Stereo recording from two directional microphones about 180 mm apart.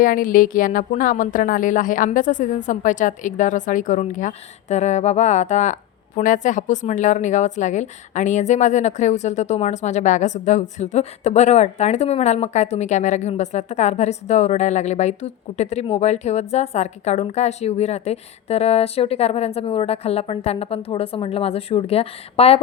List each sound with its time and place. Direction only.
0.0 s a woman's voice: 50° left (ahead or behind); by 22.6 s 35° left (ahead or behind)